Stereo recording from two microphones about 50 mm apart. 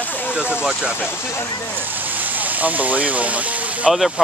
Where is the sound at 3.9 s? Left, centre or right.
Centre.